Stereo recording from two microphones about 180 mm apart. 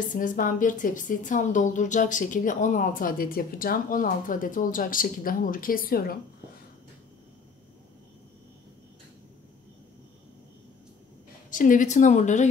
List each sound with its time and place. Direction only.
0.1 s speech: 45° left (ahead or behind)
11.5 s speech: 45° left (ahead or behind)